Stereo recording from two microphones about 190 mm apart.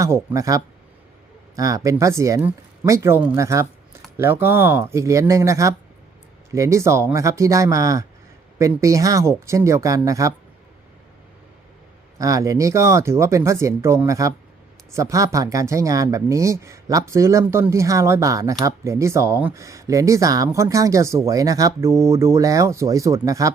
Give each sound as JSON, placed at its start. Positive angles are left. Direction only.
{"t": 0.0, "sound": "speech", "side_deg": -15}
{"t": 12.2, "sound": "speech", "side_deg": -15}